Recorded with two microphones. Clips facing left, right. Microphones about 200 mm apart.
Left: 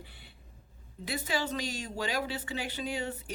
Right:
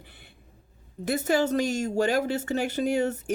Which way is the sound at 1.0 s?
45° right (ahead or behind).